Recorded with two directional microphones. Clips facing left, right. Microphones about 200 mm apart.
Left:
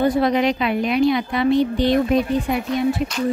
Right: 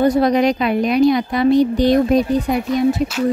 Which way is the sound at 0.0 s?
40° right (ahead or behind).